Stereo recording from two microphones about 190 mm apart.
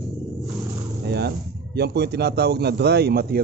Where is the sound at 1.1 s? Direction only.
60° right (ahead or behind).